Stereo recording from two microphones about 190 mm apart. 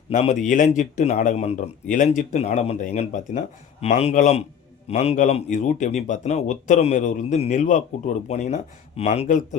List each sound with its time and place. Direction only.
0.1 s speech: 40° left (ahead or behind)